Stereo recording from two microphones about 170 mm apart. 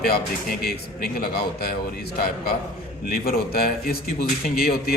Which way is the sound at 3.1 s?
65° left (ahead or behind).